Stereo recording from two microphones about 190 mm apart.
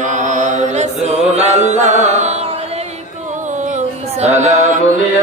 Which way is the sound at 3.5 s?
40° right (ahead or behind).